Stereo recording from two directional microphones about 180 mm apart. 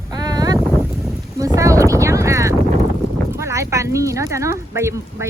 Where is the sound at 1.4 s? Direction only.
20° right (ahead or behind).